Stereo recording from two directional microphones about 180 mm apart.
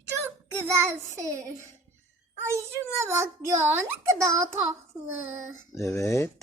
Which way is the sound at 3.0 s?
15° right (ahead or behind).